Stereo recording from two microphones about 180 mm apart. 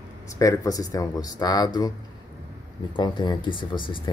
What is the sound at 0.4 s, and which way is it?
Speech, 20° left (ahead or behind).